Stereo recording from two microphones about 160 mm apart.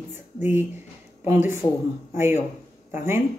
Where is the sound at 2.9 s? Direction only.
15° right (ahead or behind).